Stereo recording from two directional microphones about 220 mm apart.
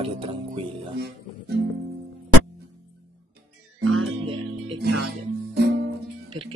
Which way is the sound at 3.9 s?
65° right (ahead or behind).